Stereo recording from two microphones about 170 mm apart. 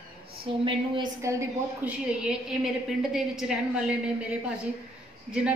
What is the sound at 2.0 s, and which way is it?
A woman's voice, 5° right (ahead or behind).